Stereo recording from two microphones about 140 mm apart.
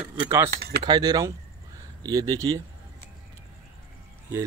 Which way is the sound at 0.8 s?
30° right (ahead or behind).